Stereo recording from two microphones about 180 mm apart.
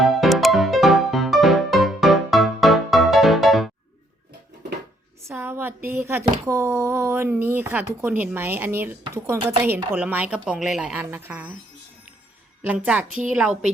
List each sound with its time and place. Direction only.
0.0 s music: centre (ahead or behind)
5.3 s a sound: 10° right (ahead or behind)
6.4 s speech: 15° right (ahead or behind)
12.6 s speech: 10° right (ahead or behind)